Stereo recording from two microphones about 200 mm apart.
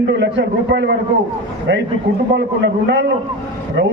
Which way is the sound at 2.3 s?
60° right (ahead or behind).